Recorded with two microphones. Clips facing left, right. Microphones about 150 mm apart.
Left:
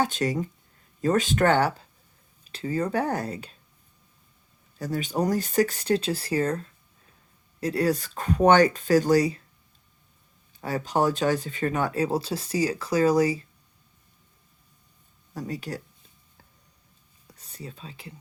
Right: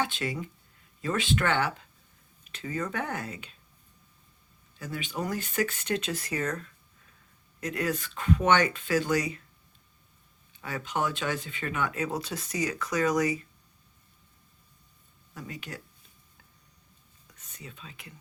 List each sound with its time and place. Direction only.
0.0 s speech: 40° left (ahead or behind)
4.8 s speech: 40° left (ahead or behind)
10.5 s speech: 40° left (ahead or behind)
15.3 s speech: 40° left (ahead or behind)
17.2 s a sound: 35° left (ahead or behind)